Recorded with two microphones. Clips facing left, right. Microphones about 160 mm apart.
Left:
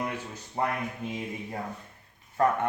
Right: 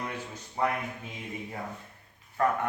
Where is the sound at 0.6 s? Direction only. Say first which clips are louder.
Even; 45° left (ahead or behind).